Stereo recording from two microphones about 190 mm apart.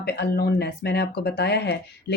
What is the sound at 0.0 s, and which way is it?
Speech, 55° left (ahead or behind).